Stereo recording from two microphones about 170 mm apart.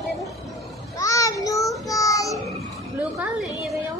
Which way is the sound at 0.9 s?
20° left (ahead or behind).